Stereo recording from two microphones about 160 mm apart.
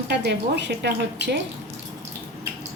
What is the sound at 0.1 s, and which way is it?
A woman's voice, 90° right.